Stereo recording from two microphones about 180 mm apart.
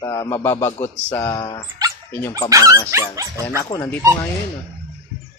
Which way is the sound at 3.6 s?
20° left (ahead or behind).